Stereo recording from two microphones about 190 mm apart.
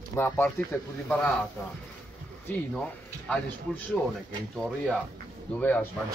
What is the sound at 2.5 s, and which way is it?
Speech, 10° left (ahead or behind).